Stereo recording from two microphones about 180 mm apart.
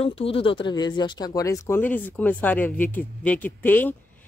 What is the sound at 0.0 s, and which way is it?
Speech, 30° left (ahead or behind).